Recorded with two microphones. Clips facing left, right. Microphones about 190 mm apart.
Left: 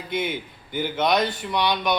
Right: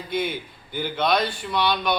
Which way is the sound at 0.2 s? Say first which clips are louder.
Right 1 dB; 20° left (ahead or behind).